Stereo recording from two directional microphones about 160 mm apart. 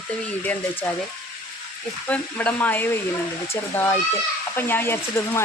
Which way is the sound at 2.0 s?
10° left (ahead or behind).